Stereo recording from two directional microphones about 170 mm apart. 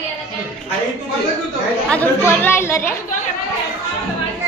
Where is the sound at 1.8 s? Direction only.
10° left (ahead or behind).